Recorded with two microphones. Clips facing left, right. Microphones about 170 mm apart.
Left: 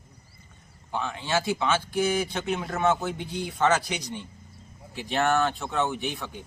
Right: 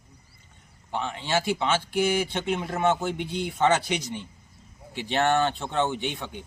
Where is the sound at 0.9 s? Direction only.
20° right (ahead or behind).